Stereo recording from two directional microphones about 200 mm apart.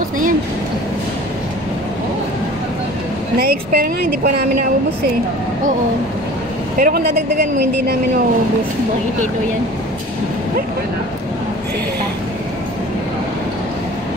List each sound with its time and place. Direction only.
3.3 s a woman's voice: 50° right (ahead or behind)
6.8 s a woman's voice: 50° right (ahead or behind)